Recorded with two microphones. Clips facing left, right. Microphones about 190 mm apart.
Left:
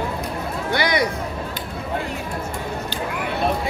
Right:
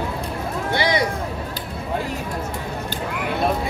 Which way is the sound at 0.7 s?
25° right (ahead or behind).